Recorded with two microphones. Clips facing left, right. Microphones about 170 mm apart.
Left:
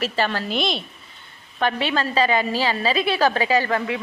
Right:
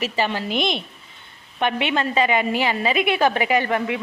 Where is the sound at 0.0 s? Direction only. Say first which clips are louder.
Even; 15° right (ahead or behind).